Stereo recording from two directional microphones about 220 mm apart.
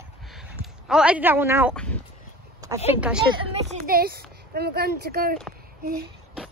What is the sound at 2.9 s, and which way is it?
Speech, 5° right (ahead or behind).